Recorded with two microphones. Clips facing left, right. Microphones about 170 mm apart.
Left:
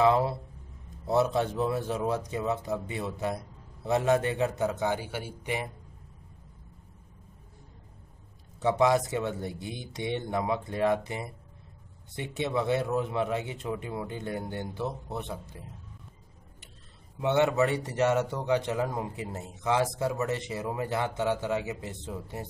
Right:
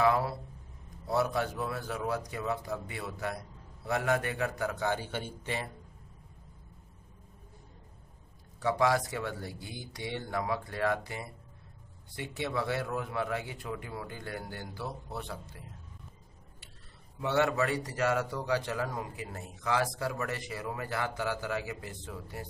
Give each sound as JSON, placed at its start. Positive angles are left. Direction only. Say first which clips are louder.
{"t": 0.0, "sound": "a man's voice", "louder": "left 4 dB", "side_deg": 25}
{"t": 8.5, "sound": "a man's voice", "louder": "left 4 dB", "side_deg": 20}
{"t": 17.2, "sound": "a man's voice", "louder": "left 4 dB", "side_deg": 20}